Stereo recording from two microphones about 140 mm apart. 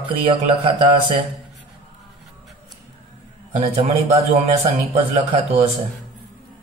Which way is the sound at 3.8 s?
40° right (ahead or behind).